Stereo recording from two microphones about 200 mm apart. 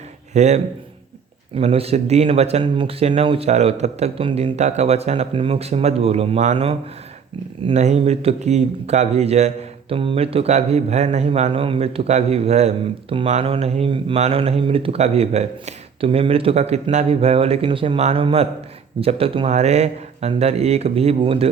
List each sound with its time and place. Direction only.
0.3 s a man's voice: 35° right (ahead or behind)